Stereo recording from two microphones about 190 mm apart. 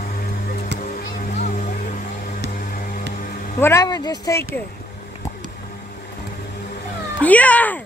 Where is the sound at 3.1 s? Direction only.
45° left (ahead or behind).